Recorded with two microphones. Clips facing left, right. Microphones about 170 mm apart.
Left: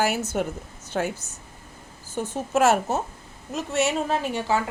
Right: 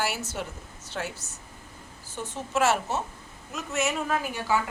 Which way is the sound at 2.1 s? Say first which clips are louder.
Left 5 dB; 45° left (ahead or behind).